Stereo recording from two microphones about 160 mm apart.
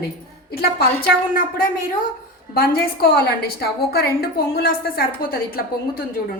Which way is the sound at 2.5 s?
65° left (ahead or behind).